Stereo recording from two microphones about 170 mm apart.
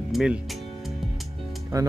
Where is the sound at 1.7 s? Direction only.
20° right (ahead or behind).